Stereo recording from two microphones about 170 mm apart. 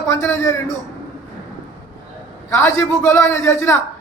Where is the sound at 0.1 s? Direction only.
15° left (ahead or behind).